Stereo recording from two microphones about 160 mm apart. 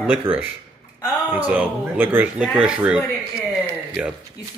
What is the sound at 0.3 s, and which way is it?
Speech, 35° right (ahead or behind).